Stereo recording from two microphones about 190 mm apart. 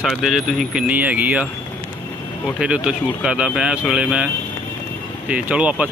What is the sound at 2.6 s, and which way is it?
Speech, 5° right (ahead or behind).